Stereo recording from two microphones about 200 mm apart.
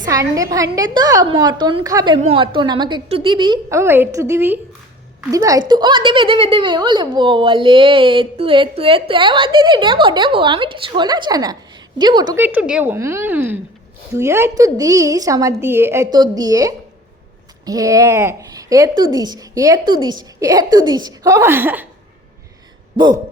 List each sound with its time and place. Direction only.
0.0 s a woman's voice: 15° right (ahead or behind)
2.1 s a woman's voice: 30° right (ahead or behind)
12.4 s a woman's voice: 10° right (ahead or behind)